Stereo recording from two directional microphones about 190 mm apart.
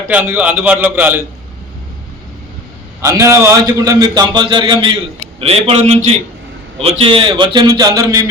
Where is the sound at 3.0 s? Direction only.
15° right (ahead or behind).